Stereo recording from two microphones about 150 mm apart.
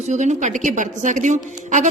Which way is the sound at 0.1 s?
50° right (ahead or behind).